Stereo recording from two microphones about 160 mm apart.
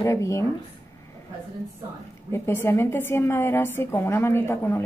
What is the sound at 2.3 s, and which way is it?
Speech, 15° left (ahead or behind).